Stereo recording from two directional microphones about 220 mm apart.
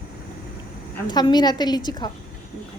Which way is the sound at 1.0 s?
20° left (ahead or behind).